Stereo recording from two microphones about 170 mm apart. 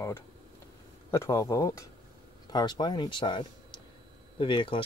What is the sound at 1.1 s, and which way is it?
Speech, 15° left (ahead or behind).